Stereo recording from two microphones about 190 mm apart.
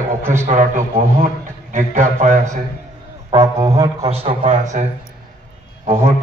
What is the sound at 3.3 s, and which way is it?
Speech, 20° right (ahead or behind).